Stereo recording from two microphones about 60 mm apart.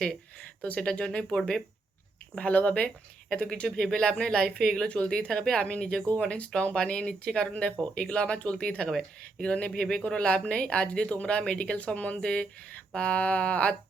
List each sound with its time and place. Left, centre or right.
0.3 s speech: left